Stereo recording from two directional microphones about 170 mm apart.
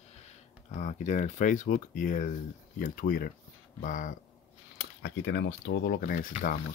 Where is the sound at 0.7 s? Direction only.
45° left (ahead or behind).